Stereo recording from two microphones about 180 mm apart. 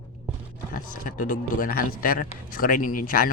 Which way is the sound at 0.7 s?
50° left (ahead or behind).